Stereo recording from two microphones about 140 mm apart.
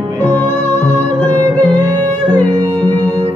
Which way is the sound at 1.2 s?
10° left (ahead or behind).